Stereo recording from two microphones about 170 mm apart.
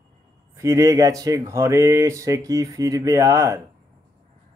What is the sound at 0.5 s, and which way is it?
Speech, 15° right (ahead or behind).